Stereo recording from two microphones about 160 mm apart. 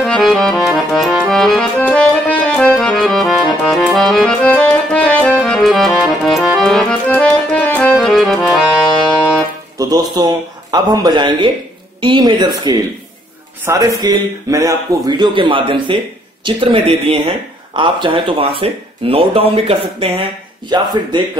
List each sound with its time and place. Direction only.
0.0 s accordion: centre (ahead or behind)
9.8 s speech: 25° right (ahead or behind)